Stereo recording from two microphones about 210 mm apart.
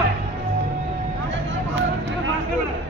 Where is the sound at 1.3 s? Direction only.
65° right (ahead or behind).